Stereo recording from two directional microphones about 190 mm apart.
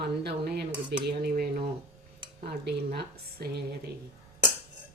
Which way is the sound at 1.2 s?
50° right (ahead or behind).